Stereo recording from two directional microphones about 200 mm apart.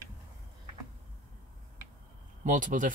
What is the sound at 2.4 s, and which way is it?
Speech, 40° right (ahead or behind).